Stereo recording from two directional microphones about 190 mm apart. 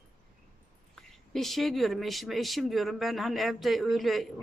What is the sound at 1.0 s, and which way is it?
Speech, centre (ahead or behind).